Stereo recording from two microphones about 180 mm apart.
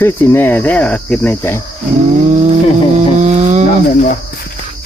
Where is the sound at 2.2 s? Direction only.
40° right (ahead or behind).